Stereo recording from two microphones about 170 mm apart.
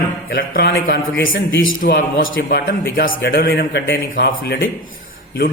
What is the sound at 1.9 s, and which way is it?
A man's voice, 75° left (ahead or behind).